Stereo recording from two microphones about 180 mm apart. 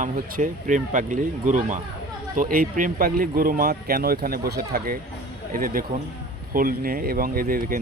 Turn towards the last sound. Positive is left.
turn(degrees=-50)  # may be behind; listen again after turning